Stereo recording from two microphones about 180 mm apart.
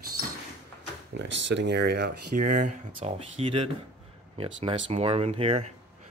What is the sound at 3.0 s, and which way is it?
Speech, 30° right (ahead or behind).